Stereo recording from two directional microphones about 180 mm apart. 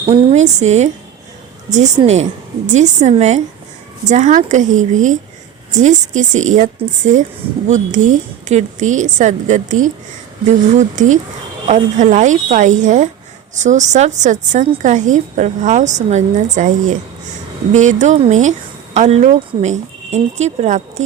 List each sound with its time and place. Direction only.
0.1 s speech: 40° right (ahead or behind)